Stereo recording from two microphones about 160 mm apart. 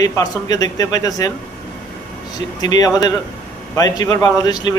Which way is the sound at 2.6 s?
25° left (ahead or behind).